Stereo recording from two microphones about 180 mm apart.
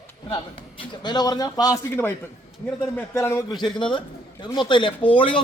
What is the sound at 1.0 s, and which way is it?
A man's voice, 25° left (ahead or behind).